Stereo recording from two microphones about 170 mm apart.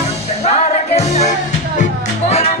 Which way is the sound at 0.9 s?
40° left (ahead or behind).